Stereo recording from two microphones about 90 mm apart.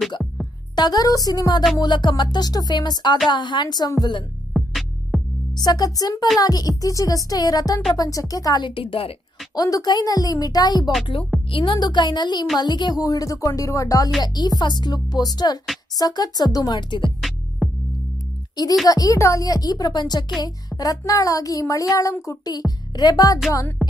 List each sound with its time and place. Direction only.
0.7 s speech: 50° left (ahead or behind)
1.8 s speech: 55° left (ahead or behind)
4.6 s music: centre (ahead or behind)
5.5 s speech: 45° left (ahead or behind)
8.6 s a woman's voice: 85° left
9.6 s speech: 45° left (ahead or behind)
11.3 s music: centre (ahead or behind)
11.7 s speech: 55° left (ahead or behind)
17.6 s music: centre (ahead or behind)
18.9 s speech: 45° left (ahead or behind)
22.5 s speech: 50° left (ahead or behind)
23.8 s music: centre (ahead or behind)